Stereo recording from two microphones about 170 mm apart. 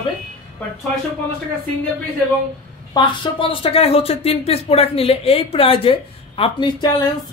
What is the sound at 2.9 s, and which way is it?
Speech, 30° left (ahead or behind).